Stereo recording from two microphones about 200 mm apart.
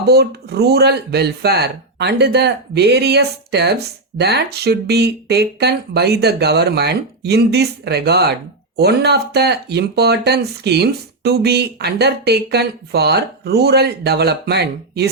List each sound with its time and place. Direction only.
0.1 s speech: 55° right (ahead or behind)